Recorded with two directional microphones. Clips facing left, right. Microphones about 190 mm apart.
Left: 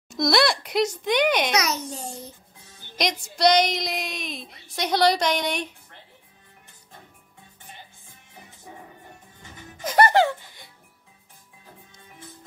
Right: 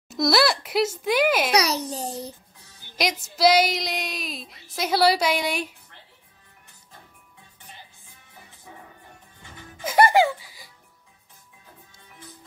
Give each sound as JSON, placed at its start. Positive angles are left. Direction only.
{"t": 0.1, "sound": "a woman's voice", "side_deg": 0}
{"t": 1.5, "sound": "a child's voice", "side_deg": -35}
{"t": 3.0, "sound": "a woman's voice", "side_deg": -5}
{"t": 9.8, "sound": "speech", "side_deg": -10}